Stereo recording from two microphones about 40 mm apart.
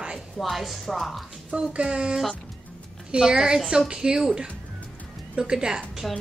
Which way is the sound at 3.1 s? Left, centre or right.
Centre.